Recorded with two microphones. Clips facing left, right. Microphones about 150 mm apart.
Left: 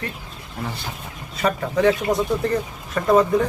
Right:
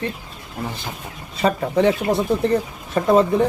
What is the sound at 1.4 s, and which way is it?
Speech, 30° right (ahead or behind).